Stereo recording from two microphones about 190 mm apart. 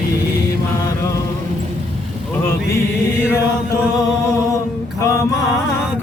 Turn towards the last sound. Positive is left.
turn(degrees=15)  # may be behind; listen again after turning